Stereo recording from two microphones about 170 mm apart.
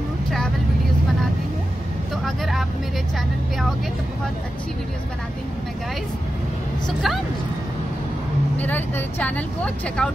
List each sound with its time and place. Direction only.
2.2 s speech: centre (ahead or behind)
8.5 s speech: 10° left (ahead or behind)